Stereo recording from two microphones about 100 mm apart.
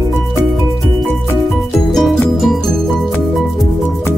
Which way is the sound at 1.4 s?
Centre (ahead or behind).